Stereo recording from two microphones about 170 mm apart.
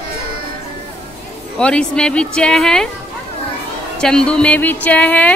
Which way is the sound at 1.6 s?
5° left (ahead or behind).